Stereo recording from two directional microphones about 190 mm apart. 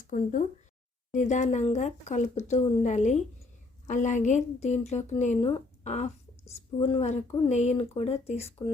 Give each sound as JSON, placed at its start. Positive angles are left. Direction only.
{"t": 0.0, "sound": "a woman's voice", "side_deg": 45}